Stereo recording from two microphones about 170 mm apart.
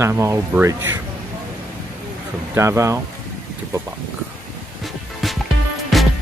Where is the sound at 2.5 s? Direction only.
15° right (ahead or behind).